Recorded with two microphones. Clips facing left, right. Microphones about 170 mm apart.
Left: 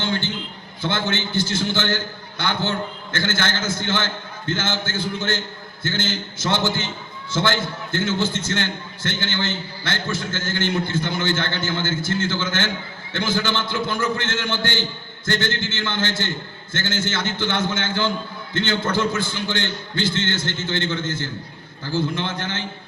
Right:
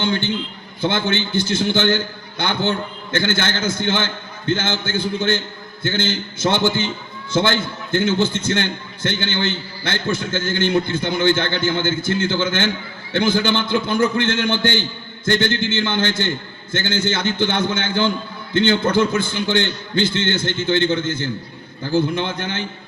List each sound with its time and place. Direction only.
0.0 s a man's voice: 20° right (ahead or behind)